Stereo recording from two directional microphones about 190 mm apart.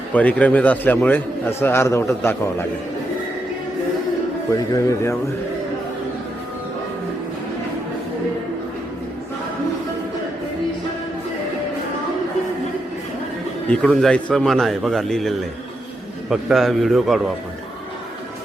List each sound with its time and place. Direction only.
0.1 s a man's voice: 5° left (ahead or behind)
4.5 s a man's voice: 15° left (ahead or behind)
13.7 s a man's voice: 5° left (ahead or behind)